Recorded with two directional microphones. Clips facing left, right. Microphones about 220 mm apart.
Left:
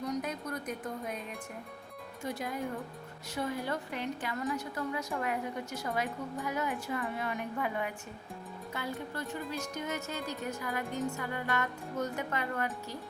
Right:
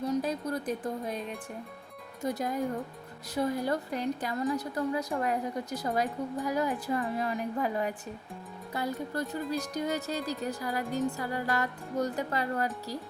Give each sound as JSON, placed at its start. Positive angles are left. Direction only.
{"t": 0.0, "sound": "speech", "side_deg": -30}
{"t": 2.2, "sound": "a woman's voice", "side_deg": -40}